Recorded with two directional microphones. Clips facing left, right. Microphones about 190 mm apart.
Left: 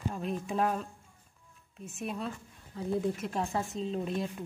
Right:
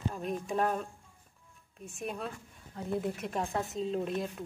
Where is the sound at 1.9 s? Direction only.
Centre (ahead or behind).